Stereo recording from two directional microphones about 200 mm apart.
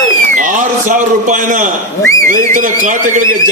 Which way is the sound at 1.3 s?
40° right (ahead or behind).